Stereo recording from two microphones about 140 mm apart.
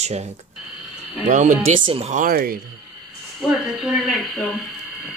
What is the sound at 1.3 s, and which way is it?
Speech, 65° right (ahead or behind).